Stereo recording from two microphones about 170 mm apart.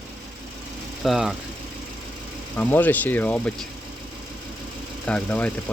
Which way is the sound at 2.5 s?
10° left (ahead or behind).